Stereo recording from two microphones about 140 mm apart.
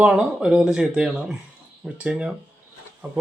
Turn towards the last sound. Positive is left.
turn(degrees=-20)  # may be behind; listen again after turning